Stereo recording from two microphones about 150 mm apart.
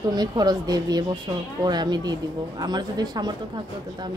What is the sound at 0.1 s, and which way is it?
Speech, 25° right (ahead or behind).